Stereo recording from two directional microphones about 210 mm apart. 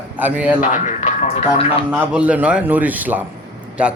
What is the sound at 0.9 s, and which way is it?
Speech, 35° left (ahead or behind).